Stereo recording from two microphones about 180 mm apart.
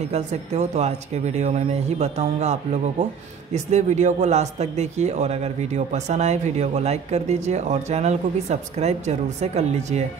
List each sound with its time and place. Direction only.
0.1 s speech: 40° right (ahead or behind)